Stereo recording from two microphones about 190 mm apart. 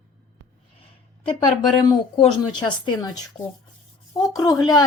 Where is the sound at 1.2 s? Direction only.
25° left (ahead or behind).